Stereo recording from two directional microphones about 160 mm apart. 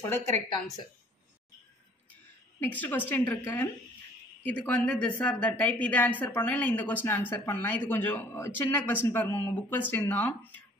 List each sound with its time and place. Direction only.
0.0 s a woman's voice: 15° left (ahead or behind)
2.6 s a woman's voice: 10° left (ahead or behind)